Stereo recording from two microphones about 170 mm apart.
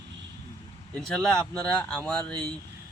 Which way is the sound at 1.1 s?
5° left (ahead or behind).